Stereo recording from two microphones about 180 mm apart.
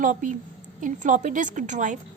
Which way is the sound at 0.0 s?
45° right (ahead or behind).